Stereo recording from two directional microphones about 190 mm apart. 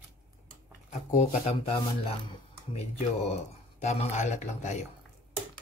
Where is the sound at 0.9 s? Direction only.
35° left (ahead or behind).